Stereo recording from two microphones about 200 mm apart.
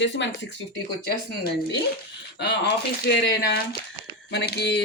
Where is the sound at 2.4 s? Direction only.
60° left (ahead or behind).